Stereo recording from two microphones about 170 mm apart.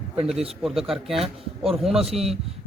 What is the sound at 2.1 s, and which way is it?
Speech, 35° right (ahead or behind).